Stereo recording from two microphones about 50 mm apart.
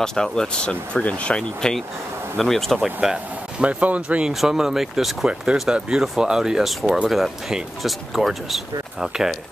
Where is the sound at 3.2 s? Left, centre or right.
Right.